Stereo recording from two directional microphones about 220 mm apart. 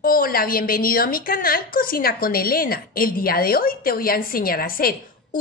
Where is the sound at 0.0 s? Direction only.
40° left (ahead or behind).